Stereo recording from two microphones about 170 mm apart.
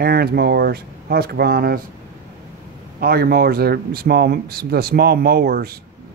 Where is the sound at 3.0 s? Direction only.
65° right (ahead or behind).